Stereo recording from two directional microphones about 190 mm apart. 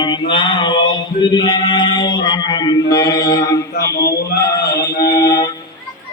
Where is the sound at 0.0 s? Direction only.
25° left (ahead or behind).